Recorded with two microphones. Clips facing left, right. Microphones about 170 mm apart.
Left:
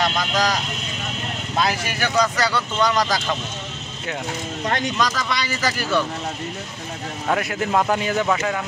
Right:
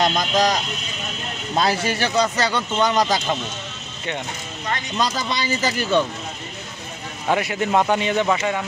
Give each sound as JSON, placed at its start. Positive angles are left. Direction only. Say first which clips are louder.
{"t": 0.0, "sound": "speech", "louder": "right 2 dB", "side_deg": -35}
{"t": 4.6, "sound": "speech", "louder": "left 4 dB", "side_deg": 75}
{"t": 4.9, "sound": "speech", "louder": "even", "side_deg": -30}
{"t": 7.2, "sound": "a man's voice", "louder": "right 2 dB", "side_deg": 0}